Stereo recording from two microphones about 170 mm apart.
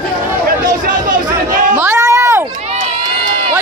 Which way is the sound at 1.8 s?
15° right (ahead or behind).